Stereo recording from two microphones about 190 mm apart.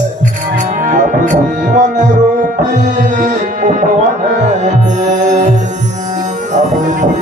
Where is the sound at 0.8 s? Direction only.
45° right (ahead or behind).